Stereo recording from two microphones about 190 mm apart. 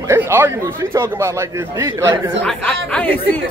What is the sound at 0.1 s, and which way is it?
A man's voice, 10° right (ahead or behind).